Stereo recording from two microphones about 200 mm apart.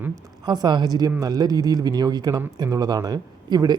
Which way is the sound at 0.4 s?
20° right (ahead or behind).